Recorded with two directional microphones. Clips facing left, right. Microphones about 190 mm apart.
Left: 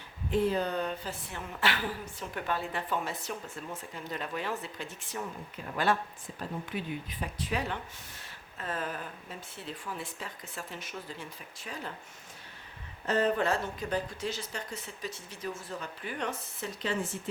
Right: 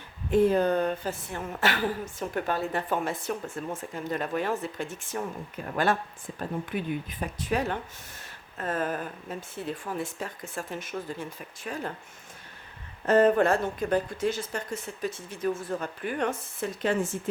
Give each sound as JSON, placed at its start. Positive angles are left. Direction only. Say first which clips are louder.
{"t": 0.3, "sound": "speech", "louder": "right 7 dB", "side_deg": -50}
{"t": 13.1, "sound": "speech", "louder": "right 7 dB", "side_deg": -50}